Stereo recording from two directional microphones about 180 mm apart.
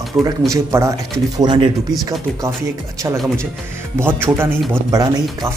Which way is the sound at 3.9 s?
10° right (ahead or behind).